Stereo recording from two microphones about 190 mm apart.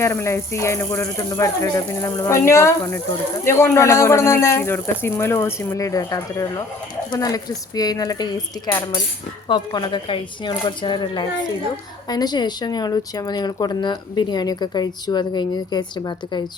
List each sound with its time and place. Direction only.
0.0 s speech: 15° left (ahead or behind)